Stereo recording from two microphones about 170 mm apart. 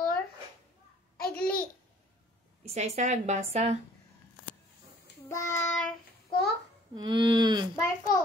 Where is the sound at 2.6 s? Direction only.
40° right (ahead or behind).